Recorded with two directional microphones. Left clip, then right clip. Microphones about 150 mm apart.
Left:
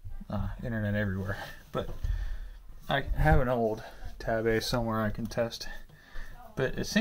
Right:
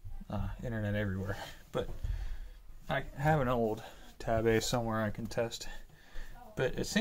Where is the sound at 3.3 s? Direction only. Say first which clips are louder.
Left 3 dB; 5° right (ahead or behind).